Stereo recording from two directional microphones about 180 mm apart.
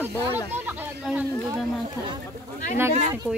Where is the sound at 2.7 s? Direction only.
15° right (ahead or behind).